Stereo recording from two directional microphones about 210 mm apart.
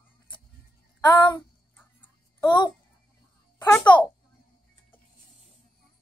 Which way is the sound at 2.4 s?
20° left (ahead or behind).